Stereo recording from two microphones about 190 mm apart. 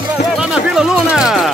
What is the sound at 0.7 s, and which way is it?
Speech, 5° right (ahead or behind).